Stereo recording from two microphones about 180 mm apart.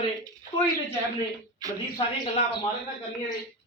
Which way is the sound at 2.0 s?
25° left (ahead or behind).